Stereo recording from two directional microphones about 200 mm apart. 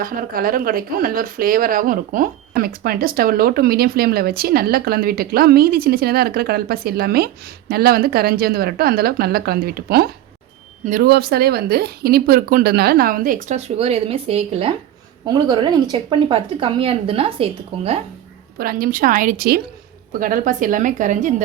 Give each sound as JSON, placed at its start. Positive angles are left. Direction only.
{"t": 0.0, "sound": "speech", "side_deg": -45}
{"t": 15.3, "sound": "speech", "side_deg": -20}
{"t": 18.5, "sound": "a woman's voice", "side_deg": -45}